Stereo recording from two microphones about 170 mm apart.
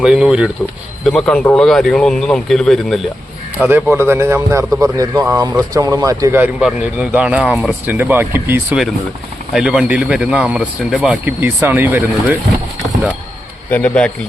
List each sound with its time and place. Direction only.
0.0 s speech: 5° right (ahead or behind)
3.6 s speech: 10° right (ahead or behind)
6.6 s speech: 5° right (ahead or behind)
13.7 s a man's voice: 10° left (ahead or behind)